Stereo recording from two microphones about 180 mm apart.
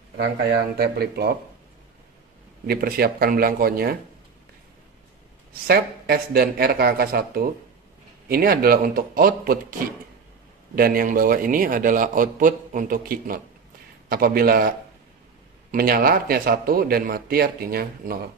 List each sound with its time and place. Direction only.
0.7 s speech: 60° right (ahead or behind)
2.6 s speech: 55° right (ahead or behind)
5.7 s speech: 60° right (ahead or behind)
10.8 s a man's voice: 50° right (ahead or behind)
15.7 s speech: 55° right (ahead or behind)